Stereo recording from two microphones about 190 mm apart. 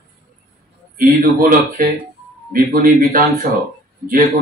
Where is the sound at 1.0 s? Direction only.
45° right (ahead or behind).